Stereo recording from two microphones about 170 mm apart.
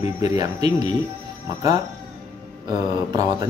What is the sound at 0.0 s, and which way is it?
Speech, 20° right (ahead or behind).